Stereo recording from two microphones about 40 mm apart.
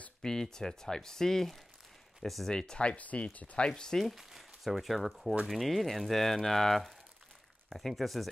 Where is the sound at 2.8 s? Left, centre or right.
Left.